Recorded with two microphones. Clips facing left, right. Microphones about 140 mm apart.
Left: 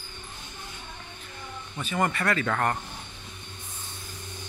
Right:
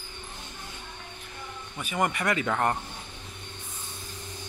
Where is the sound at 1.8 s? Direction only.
10° right (ahead or behind).